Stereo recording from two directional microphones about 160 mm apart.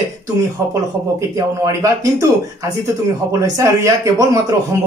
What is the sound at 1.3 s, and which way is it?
Speech, 20° right (ahead or behind).